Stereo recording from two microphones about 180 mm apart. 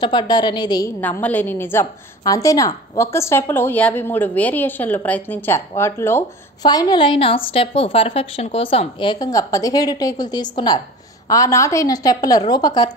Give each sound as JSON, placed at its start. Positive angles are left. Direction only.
{"t": 0.0, "sound": "a woman's voice", "side_deg": 25}
{"t": 1.0, "sound": "a woman's voice", "side_deg": 10}